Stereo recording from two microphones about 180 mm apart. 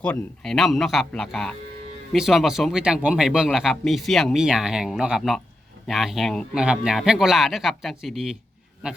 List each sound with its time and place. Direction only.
0.0 s speech: 5° left (ahead or behind)